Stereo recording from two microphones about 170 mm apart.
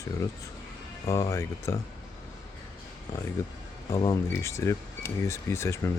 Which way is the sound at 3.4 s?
15° left (ahead or behind).